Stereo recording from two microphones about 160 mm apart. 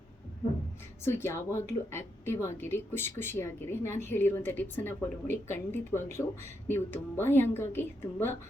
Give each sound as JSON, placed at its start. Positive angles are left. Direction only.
{"t": 1.0, "sound": "speech", "side_deg": 15}